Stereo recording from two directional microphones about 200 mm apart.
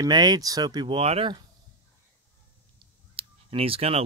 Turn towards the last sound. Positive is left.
turn(degrees=-30)  # may be behind; listen again after turning